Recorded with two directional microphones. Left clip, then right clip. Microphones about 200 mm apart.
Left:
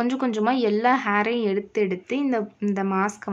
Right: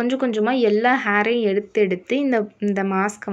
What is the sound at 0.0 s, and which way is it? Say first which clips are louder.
A woman's voice: right 3 dB; 5° right (ahead or behind).